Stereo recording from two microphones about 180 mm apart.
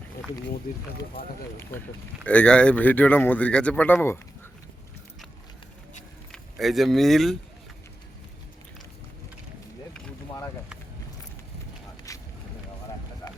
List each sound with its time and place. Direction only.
1.2 s speech: 55° left (ahead or behind)
2.2 s speech: 5° left (ahead or behind)
6.3 s speech: centre (ahead or behind)
12.1 s a sound: 20° left (ahead or behind)
13.2 s music: 15° left (ahead or behind)